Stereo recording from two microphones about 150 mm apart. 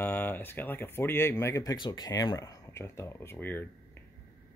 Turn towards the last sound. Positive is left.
turn(degrees=15)  # may be behind; listen again after turning